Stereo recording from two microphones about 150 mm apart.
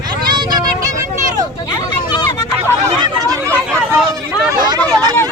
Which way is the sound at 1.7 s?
25° left (ahead or behind).